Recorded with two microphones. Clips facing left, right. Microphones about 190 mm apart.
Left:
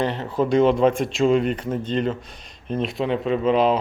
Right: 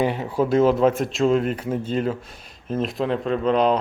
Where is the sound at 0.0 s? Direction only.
10° right (ahead or behind).